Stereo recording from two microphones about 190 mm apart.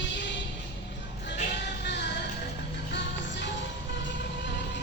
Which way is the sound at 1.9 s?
65° left (ahead or behind).